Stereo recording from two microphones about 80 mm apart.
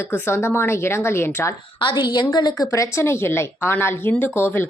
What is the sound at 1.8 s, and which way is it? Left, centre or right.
Speech, left.